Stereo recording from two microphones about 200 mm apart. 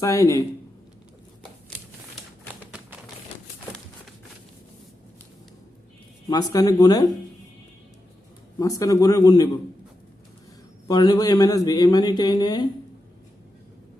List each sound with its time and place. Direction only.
0.0 s speech: 15° left (ahead or behind)
6.2 s a man's voice: 20° left (ahead or behind)
8.5 s speech: 15° left (ahead or behind)
10.8 s a man's voice: 20° left (ahead or behind)